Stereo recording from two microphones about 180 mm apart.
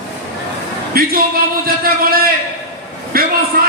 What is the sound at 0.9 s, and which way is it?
Speech, 55° right (ahead or behind).